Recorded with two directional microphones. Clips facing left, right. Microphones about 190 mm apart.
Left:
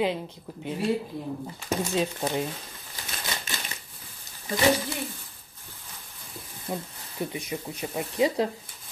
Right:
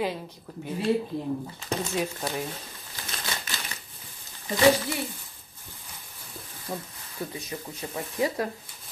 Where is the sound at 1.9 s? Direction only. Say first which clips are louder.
Left 5 dB; 20° left (ahead or behind).